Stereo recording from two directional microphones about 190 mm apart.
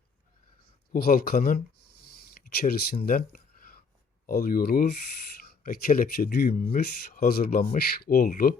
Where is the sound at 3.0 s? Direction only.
50° left (ahead or behind).